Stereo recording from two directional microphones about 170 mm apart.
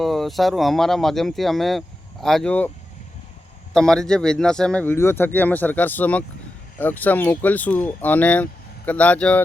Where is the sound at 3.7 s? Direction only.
5° left (ahead or behind).